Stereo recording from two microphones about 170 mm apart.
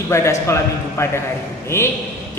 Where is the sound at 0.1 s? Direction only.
15° left (ahead or behind).